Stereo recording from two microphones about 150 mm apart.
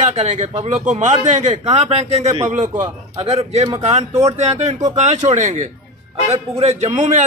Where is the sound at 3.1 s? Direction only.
40° right (ahead or behind).